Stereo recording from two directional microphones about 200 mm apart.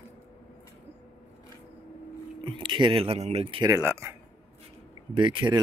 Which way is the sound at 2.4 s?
25° right (ahead or behind).